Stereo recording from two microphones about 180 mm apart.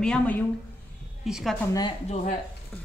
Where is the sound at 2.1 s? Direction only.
40° left (ahead or behind).